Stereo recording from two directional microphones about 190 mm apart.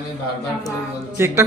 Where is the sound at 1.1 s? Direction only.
15° right (ahead or behind).